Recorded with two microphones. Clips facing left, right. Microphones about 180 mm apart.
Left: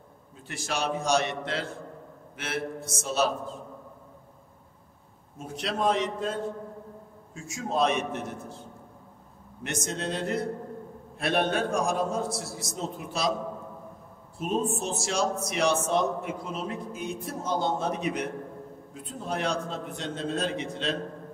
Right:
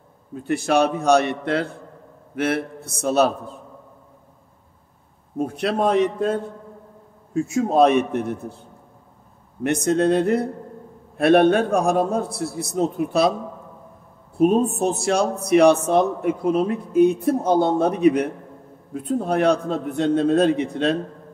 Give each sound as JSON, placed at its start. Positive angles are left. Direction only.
{"t": 0.3, "sound": "a man's voice", "side_deg": -60}
{"t": 5.4, "sound": "a man's voice", "side_deg": -60}
{"t": 9.6, "sound": "a man's voice", "side_deg": -60}
{"t": 14.4, "sound": "a man's voice", "side_deg": -60}